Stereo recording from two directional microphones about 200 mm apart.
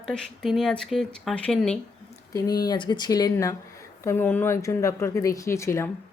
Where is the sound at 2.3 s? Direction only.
20° left (ahead or behind).